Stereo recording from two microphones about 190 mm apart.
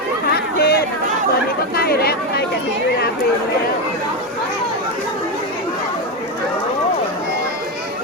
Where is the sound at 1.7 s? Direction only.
55° left (ahead or behind).